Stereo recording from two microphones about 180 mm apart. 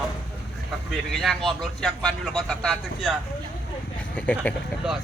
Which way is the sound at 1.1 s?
Centre (ahead or behind).